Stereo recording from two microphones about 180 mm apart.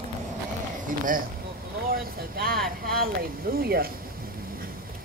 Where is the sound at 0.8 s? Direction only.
50° right (ahead or behind).